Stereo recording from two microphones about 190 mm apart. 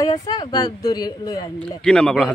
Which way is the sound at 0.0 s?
20° left (ahead or behind).